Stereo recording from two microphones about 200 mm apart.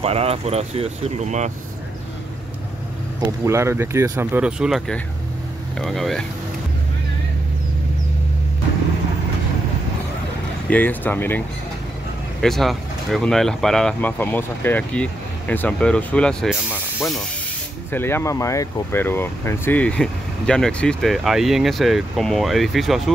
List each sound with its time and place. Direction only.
0.0 s speech: 30° right (ahead or behind)
3.3 s speech: 15° right (ahead or behind)
10.7 s speech: 10° left (ahead or behind)
17.9 s speech: 10° left (ahead or behind)